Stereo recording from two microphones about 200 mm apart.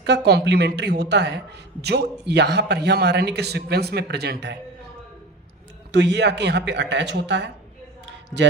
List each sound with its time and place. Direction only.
0.0 s a man's voice: 55° right (ahead or behind)
5.9 s a man's voice: 60° right (ahead or behind)